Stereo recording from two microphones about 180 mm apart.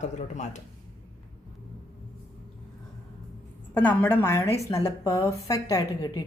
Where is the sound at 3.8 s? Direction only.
10° left (ahead or behind).